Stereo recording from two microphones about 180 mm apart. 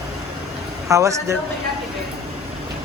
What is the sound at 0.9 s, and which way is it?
Speech, 15° right (ahead or behind).